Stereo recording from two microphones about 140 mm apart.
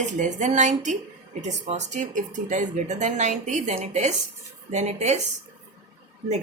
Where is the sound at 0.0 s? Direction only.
60° right (ahead or behind).